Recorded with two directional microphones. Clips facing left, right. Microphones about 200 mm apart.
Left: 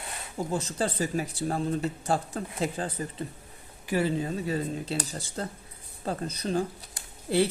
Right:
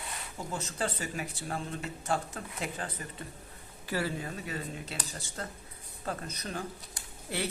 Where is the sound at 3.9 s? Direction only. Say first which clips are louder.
Left 7 dB; 20° left (ahead or behind).